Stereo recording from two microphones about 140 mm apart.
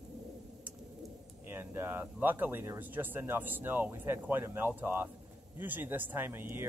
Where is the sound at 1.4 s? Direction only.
15° right (ahead or behind).